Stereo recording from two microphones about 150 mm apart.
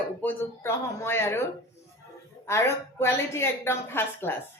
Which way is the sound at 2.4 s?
20° left (ahead or behind).